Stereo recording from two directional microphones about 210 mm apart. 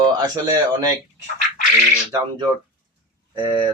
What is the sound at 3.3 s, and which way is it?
Speech, 20° right (ahead or behind).